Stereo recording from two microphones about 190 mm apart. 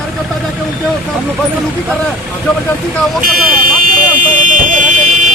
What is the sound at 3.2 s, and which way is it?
Speech, 50° right (ahead or behind).